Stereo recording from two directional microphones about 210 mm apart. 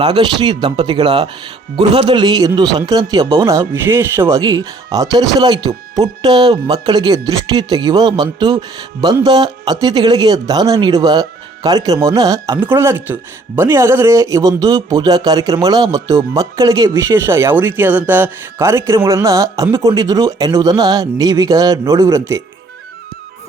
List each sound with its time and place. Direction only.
0.0 s speech: 20° right (ahead or behind)